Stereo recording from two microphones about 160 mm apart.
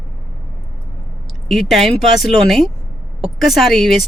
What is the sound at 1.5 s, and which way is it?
Speech, centre (ahead or behind).